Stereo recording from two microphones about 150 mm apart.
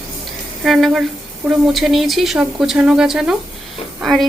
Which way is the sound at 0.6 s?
Centre (ahead or behind).